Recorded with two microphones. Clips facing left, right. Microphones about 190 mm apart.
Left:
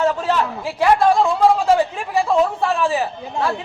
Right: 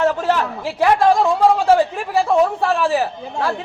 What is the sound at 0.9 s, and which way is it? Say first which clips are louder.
Speech: right 1 dB; 40° right (ahead or behind).